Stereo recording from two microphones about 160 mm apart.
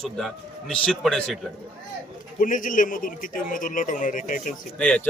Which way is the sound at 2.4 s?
55° left (ahead or behind).